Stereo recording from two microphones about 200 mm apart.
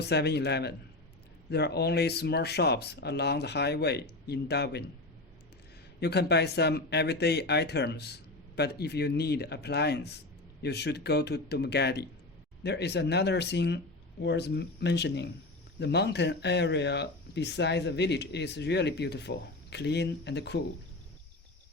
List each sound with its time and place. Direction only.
0.0 s speech: 55° left (ahead or behind)
6.0 s speech: 55° left (ahead or behind)